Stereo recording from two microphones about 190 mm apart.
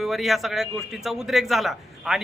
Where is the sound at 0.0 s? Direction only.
Centre (ahead or behind).